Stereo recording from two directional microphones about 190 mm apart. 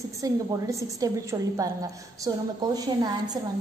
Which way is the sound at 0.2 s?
15° right (ahead or behind).